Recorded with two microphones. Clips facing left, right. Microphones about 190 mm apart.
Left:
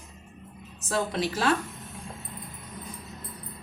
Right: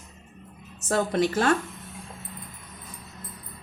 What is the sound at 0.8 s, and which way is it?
Speech, 50° right (ahead or behind).